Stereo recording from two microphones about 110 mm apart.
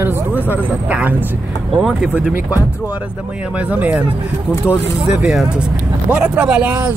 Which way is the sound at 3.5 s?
15° right (ahead or behind).